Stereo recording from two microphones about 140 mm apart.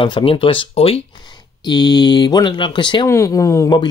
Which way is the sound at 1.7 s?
30° left (ahead or behind).